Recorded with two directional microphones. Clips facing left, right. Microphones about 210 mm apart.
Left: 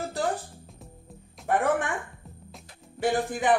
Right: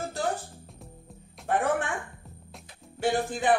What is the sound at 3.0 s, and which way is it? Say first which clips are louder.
Speech: left 1 dB; 15° left (ahead or behind).